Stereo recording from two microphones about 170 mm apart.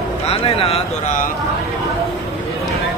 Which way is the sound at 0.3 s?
35° left (ahead or behind).